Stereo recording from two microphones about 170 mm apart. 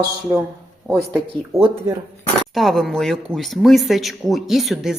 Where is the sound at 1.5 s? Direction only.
15° right (ahead or behind).